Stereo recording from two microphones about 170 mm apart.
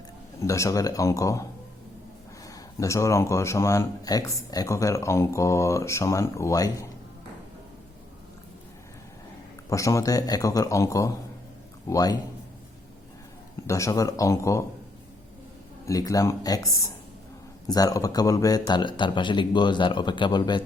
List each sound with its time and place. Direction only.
0.4 s speech: 20° left (ahead or behind)
2.5 s speech: 20° left (ahead or behind)
9.6 s speech: 20° left (ahead or behind)
13.7 s speech: 20° left (ahead or behind)
15.9 s speech: 20° left (ahead or behind)